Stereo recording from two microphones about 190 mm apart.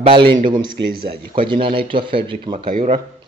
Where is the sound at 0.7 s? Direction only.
60° right (ahead or behind).